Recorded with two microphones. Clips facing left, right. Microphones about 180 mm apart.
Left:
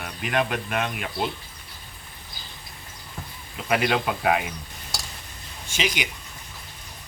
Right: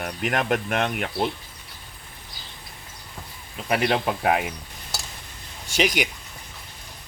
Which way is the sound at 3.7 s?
35° right (ahead or behind).